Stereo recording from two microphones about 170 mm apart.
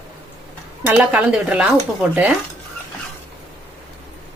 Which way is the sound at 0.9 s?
10° right (ahead or behind).